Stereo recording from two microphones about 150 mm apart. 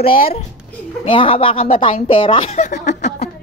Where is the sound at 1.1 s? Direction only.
35° left (ahead or behind).